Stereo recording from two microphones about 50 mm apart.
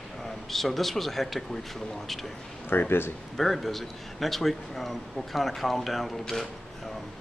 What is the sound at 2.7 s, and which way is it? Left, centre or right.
Speech, left.